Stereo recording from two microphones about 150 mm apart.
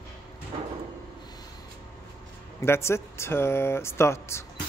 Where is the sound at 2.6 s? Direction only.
15° left (ahead or behind).